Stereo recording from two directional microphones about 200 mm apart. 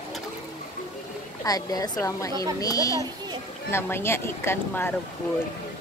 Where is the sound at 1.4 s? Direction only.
20° left (ahead or behind).